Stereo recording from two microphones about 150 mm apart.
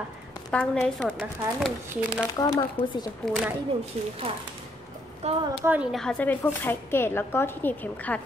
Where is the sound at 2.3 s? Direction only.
25° left (ahead or behind).